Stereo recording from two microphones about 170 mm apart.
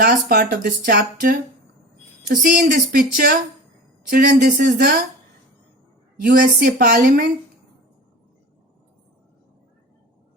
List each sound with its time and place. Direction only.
0.0 s speech: 60° right (ahead or behind)
4.1 s speech: 55° right (ahead or behind)
6.2 s speech: 60° right (ahead or behind)